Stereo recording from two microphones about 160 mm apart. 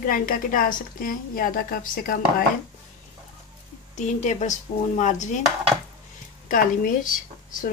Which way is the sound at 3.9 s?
50° left (ahead or behind).